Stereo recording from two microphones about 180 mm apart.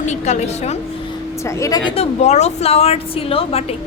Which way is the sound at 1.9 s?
35° left (ahead or behind).